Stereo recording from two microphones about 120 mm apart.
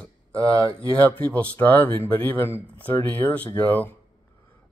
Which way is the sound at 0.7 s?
10° left (ahead or behind).